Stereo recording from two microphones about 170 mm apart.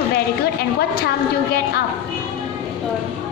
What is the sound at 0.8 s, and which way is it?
Speech, 65° left (ahead or behind).